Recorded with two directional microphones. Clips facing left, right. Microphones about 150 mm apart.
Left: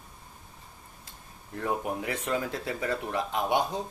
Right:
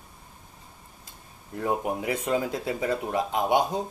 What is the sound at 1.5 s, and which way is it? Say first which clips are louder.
Speech: right 3 dB; 20° right (ahead or behind).